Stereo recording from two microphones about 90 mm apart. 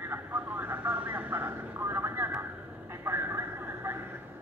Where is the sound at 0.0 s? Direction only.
20° right (ahead or behind).